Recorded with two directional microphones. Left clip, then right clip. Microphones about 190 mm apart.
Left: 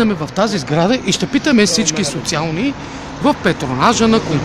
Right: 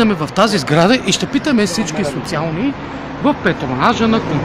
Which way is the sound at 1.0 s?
30° left (ahead or behind).